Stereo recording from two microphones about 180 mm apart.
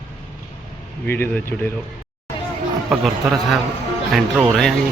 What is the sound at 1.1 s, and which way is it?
Speech, 10° left (ahead or behind).